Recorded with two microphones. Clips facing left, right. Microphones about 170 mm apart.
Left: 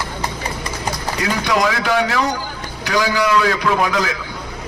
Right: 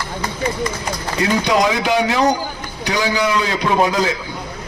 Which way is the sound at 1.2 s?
20° right (ahead or behind).